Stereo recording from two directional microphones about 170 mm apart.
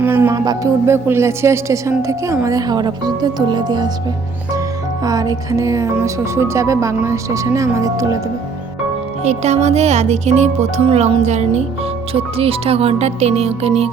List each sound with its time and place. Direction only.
0.0 s a woman's voice: 10° right (ahead or behind)
5.0 s a woman's voice: 20° right (ahead or behind)
9.2 s speech: 40° right (ahead or behind)